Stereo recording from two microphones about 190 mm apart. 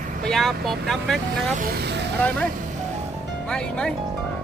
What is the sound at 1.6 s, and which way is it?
Speech, 55° right (ahead or behind).